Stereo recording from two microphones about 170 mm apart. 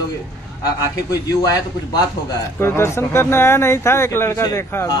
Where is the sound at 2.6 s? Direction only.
15° left (ahead or behind).